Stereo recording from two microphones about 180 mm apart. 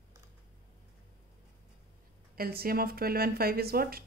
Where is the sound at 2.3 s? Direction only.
55° right (ahead or behind).